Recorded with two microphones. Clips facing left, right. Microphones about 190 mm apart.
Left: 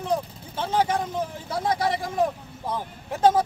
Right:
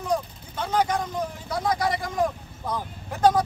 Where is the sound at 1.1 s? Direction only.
30° left (ahead or behind).